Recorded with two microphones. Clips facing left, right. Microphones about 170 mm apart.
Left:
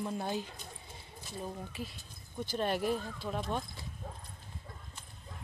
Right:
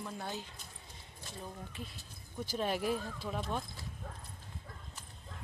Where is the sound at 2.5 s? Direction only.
Centre (ahead or behind).